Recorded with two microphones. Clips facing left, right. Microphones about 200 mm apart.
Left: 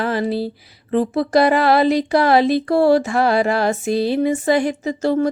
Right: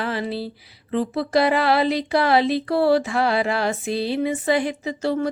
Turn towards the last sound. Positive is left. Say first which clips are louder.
# left 5 dB
turn(degrees=45)  # may be behind; listen again after turning